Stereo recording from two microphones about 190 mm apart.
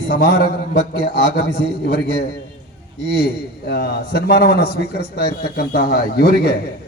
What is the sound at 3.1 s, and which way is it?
A man's voice, 60° left (ahead or behind).